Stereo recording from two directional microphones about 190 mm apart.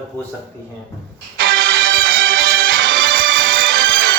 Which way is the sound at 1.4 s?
90° right.